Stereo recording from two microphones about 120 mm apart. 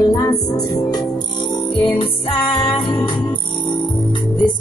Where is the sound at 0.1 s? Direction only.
35° left (ahead or behind).